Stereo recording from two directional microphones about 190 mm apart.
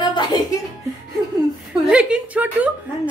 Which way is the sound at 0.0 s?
25° left (ahead or behind).